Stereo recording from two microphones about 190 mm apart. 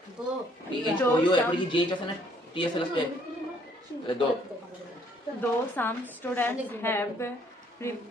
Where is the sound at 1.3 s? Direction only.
25° left (ahead or behind).